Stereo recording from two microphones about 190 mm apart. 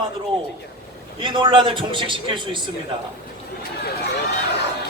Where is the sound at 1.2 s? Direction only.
25° right (ahead or behind).